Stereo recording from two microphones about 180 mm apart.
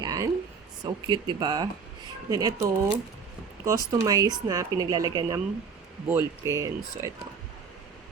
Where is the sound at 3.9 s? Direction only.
20° right (ahead or behind).